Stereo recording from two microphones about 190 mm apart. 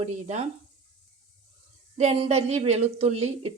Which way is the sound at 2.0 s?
35° right (ahead or behind).